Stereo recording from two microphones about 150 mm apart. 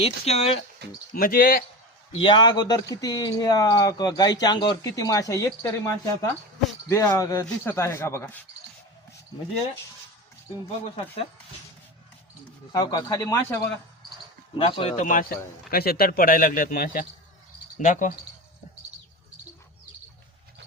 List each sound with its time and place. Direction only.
0.0 s speech: 45° left (ahead or behind)
1.1 s speech: 70° left (ahead or behind)
2.2 s speech: 30° left (ahead or behind)
10.8 s speech: 40° left (ahead or behind)
12.7 s speech: 25° left (ahead or behind)
14.5 s speech: 35° left (ahead or behind); by 15.3 s 60° left (ahead or behind)
15.7 s speech: 85° left
17.8 s speech: 60° left (ahead or behind)